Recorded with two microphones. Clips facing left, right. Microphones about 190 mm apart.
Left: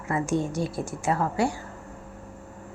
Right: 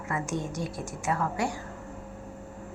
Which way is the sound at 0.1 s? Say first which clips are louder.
Left 6 dB; 30° left (ahead or behind).